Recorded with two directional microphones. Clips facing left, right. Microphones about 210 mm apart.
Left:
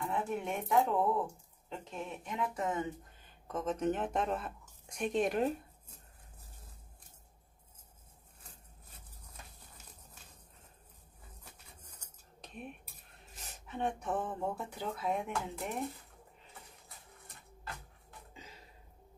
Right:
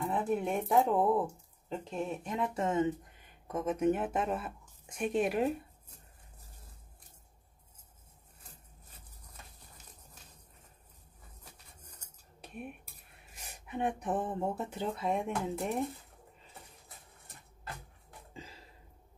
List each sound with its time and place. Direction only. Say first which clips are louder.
0.0 s speech: right 4 dB; 35° right (ahead or behind)
3.4 s a woman's voice: right 4 dB; 10° right (ahead or behind)
12.4 s cutlery: right 3 dB; 10° right (ahead or behind)
13.4 s speech: right 2 dB; 10° right (ahead or behind); by 15.7 s 30° right (ahead or behind)